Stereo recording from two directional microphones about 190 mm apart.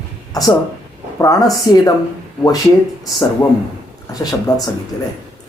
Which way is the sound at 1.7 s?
20° left (ahead or behind).